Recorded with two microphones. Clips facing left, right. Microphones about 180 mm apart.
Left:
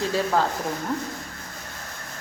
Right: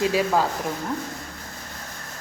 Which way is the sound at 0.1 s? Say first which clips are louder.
Right 1 dB; 10° right (ahead or behind).